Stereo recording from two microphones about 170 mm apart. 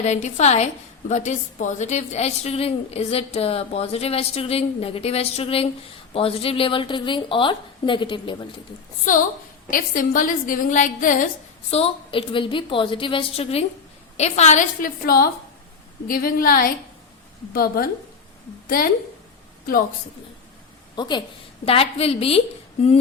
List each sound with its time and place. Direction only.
0.0 s a woman's voice: 45° left (ahead or behind)
9.1 s a woman's voice: 50° left (ahead or behind)
11.7 s a woman's voice: 35° left (ahead or behind); by 17.8 s 60° left (ahead or behind)
20.9 s a woman's voice: 25° left (ahead or behind)